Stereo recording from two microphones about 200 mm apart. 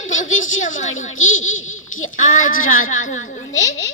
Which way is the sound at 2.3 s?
40° left (ahead or behind).